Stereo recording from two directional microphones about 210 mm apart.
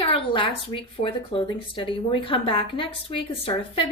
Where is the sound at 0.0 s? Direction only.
25° left (ahead or behind).